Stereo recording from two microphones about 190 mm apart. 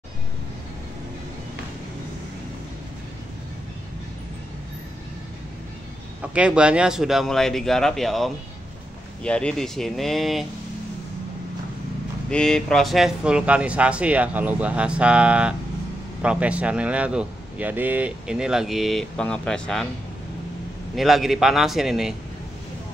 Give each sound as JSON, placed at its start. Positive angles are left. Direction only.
{"t": 6.2, "sound": "a man's voice", "side_deg": -5}
{"t": 12.3, "sound": "a man's voice", "side_deg": 5}
{"t": 20.9, "sound": "a man's voice", "side_deg": 0}